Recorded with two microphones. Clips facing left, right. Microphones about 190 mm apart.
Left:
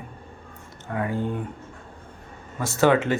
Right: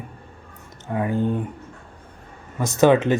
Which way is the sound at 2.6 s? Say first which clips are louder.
Right 4 dB; 20° right (ahead or behind).